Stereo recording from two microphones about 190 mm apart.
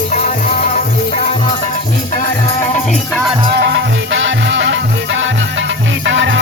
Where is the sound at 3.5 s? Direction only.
70° right (ahead or behind).